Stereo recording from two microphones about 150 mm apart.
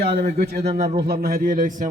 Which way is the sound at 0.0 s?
90° right.